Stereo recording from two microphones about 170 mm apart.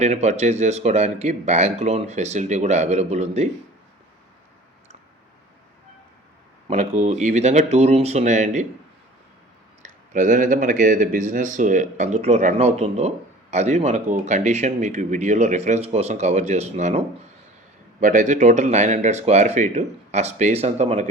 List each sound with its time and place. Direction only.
0.0 s speech: 40° right (ahead or behind)
6.7 s speech: 40° right (ahead or behind)
9.8 s speech: 50° right (ahead or behind)
18.0 s speech: 50° right (ahead or behind)